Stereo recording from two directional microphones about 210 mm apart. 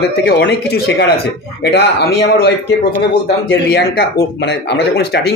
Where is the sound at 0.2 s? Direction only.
50° left (ahead or behind).